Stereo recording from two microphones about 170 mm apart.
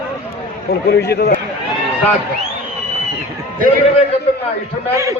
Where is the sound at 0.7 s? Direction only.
75° left (ahead or behind).